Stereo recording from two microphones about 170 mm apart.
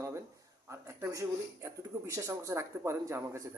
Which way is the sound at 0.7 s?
15° right (ahead or behind).